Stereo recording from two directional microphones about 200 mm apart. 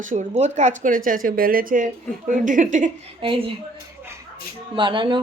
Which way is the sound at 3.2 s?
25° right (ahead or behind).